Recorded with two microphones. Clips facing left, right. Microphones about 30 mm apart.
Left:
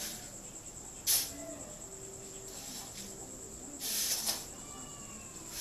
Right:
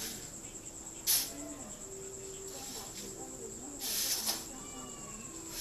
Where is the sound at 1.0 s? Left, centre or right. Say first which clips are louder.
Even; centre.